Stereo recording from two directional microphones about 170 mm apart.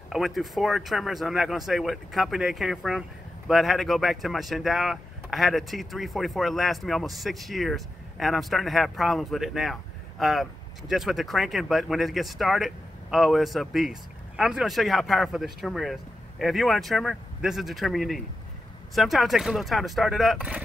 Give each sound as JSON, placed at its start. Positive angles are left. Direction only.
{"t": 0.1, "sound": "speech", "side_deg": 0}